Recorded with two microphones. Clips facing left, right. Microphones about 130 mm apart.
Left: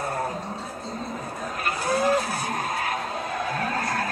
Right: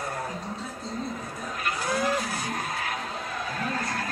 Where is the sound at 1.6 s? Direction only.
55° left (ahead or behind).